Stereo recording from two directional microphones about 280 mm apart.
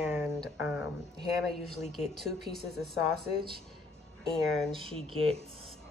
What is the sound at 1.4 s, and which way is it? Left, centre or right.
Speech, centre.